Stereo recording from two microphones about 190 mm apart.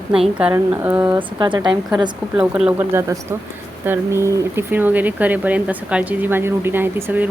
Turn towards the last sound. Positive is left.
turn(degrees=-10)  # may be behind; listen again after turning